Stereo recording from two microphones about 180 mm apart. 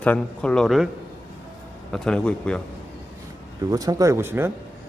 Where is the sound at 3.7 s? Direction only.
20° right (ahead or behind).